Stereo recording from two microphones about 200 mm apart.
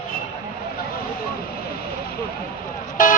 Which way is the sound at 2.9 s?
40° left (ahead or behind).